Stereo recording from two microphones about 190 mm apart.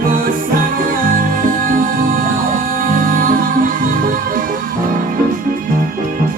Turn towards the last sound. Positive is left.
turn(degrees=-45)  # may be behind; listen again after turning